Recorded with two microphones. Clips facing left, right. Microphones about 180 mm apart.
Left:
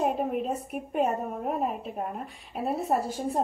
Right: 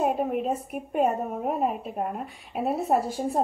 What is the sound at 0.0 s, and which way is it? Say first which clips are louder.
A woman's voice: right 2 dB; centre (ahead or behind).